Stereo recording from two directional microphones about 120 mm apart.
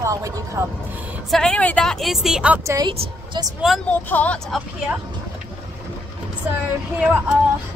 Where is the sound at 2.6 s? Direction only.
25° right (ahead or behind).